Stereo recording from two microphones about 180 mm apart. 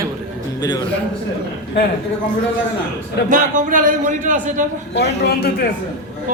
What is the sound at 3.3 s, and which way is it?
A man's voice, 45° right (ahead or behind).